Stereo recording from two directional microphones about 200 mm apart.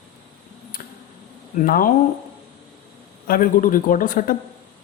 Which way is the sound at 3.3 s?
45° left (ahead or behind).